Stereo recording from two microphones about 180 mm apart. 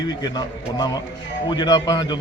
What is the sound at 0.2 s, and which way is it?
A man's voice, 20° left (ahead or behind).